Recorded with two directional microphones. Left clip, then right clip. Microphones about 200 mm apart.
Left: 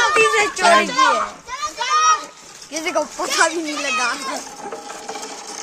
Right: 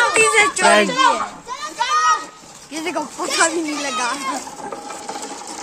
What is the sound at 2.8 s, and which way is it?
Speech, 60° left (ahead or behind).